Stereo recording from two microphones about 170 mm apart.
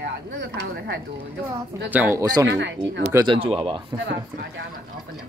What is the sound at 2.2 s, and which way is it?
Speech, 20° right (ahead or behind).